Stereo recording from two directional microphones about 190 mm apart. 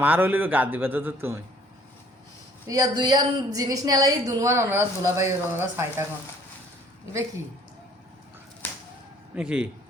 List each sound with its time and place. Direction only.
0.0 s speech: 10° right (ahead or behind)
2.6 s a woman's voice: 20° right (ahead or behind)
9.3 s a man's voice: 5° right (ahead or behind)